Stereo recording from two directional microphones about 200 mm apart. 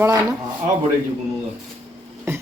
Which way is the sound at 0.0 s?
15° right (ahead or behind).